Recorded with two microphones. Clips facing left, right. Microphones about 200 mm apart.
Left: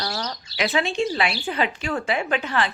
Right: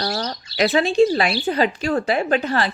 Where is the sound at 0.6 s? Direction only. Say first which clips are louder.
Right 7 dB; 35° right (ahead or behind).